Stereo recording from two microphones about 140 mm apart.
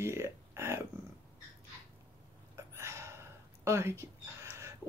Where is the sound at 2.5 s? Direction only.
20° right (ahead or behind).